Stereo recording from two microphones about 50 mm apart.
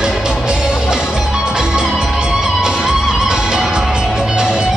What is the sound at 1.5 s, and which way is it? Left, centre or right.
Music, centre.